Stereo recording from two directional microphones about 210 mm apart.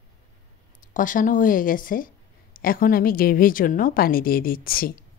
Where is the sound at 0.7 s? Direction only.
40° left (ahead or behind).